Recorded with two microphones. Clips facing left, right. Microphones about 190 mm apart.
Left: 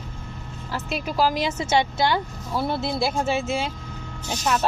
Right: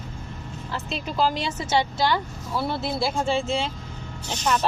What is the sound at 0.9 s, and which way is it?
Speech, 10° left (ahead or behind).